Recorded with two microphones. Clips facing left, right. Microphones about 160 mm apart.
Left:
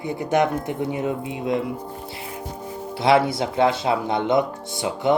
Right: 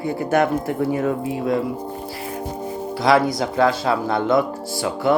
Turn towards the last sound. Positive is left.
turn(degrees=20)  # may be behind; listen again after turning